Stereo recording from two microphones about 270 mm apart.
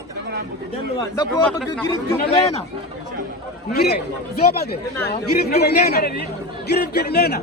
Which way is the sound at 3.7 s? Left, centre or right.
Left.